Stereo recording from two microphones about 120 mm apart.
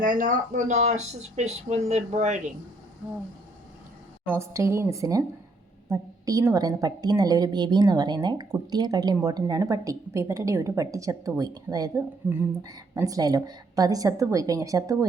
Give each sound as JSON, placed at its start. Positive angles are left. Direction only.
{"t": 0.1, "sound": "speech", "side_deg": -90}
{"t": 4.3, "sound": "a woman's voice", "side_deg": -25}
{"t": 12.2, "sound": "a woman's voice", "side_deg": -15}